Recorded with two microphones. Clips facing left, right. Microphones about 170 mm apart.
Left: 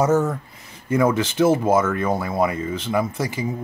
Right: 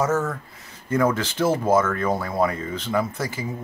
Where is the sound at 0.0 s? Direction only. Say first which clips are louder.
Left 4 dB; 20° left (ahead or behind).